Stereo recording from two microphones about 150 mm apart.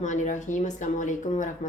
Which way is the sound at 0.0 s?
55° left (ahead or behind).